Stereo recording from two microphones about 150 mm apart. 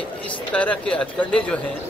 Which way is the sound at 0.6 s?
10° left (ahead or behind).